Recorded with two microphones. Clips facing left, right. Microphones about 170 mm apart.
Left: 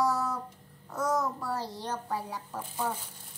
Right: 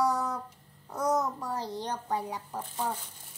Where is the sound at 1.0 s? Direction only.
15° right (ahead or behind).